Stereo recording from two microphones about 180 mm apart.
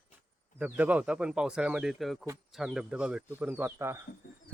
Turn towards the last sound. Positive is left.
turn(degrees=55)  # may be behind; listen again after turning